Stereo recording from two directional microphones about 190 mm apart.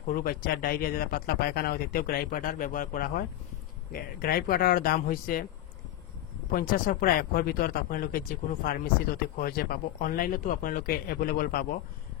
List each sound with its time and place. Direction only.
0.1 s speech: 50° left (ahead or behind)
6.5 s speech: 45° left (ahead or behind)